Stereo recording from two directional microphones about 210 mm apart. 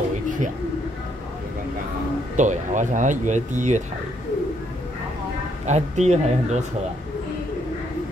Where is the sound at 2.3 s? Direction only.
35° right (ahead or behind).